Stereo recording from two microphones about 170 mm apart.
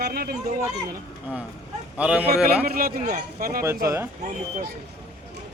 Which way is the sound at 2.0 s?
10° right (ahead or behind).